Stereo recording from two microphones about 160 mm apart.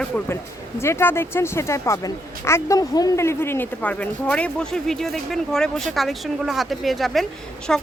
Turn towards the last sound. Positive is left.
turn(degrees=5)  # may be behind; listen again after turning